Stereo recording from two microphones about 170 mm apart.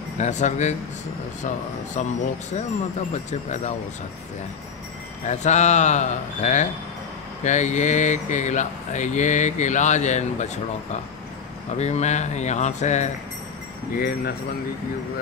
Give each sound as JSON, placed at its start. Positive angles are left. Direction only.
{"t": 0.2, "sound": "speech", "side_deg": 45}
{"t": 2.0, "sound": "speech", "side_deg": 45}
{"t": 3.3, "sound": "speech", "side_deg": 45}
{"t": 5.2, "sound": "speech", "side_deg": 45}
{"t": 11.7, "sound": "speech", "side_deg": 40}
{"t": 13.9, "sound": "speech", "side_deg": 60}